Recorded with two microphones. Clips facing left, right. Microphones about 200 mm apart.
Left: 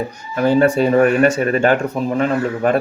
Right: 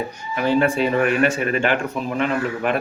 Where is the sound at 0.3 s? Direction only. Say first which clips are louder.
Left 5 dB; 40° left (ahead or behind).